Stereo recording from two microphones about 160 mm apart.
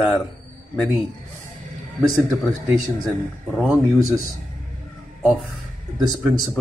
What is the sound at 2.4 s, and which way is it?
Speech, centre (ahead or behind).